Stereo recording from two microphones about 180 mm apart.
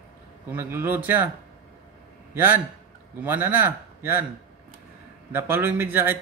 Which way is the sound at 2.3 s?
10° right (ahead or behind).